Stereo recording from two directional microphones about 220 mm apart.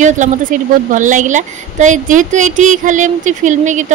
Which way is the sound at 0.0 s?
35° right (ahead or behind).